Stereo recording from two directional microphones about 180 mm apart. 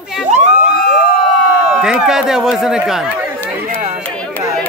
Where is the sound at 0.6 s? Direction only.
55° left (ahead or behind).